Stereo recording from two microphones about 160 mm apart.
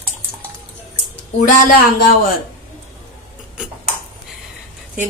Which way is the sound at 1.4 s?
65° left (ahead or behind).